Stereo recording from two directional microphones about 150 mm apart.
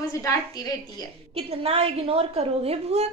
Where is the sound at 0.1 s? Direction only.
20° left (ahead or behind).